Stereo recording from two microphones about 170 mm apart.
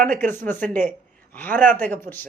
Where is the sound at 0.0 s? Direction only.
55° right (ahead or behind).